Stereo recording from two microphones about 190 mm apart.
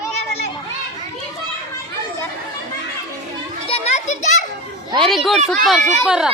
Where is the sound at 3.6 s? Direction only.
35° left (ahead or behind).